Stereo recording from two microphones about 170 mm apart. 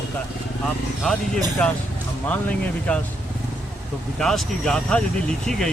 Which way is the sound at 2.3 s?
5° left (ahead or behind).